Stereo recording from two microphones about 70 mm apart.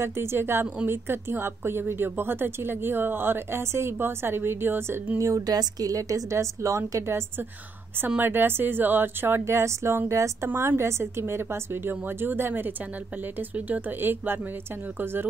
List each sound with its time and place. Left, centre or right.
0.0 s a woman's voice: right
5.5 s a woman's voice: right
8.2 s a woman's voice: right